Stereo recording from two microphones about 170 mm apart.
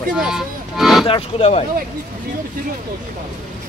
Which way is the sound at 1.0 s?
30° left (ahead or behind).